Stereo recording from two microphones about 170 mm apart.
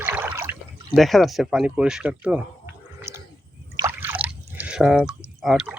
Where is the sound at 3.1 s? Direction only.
15° right (ahead or behind).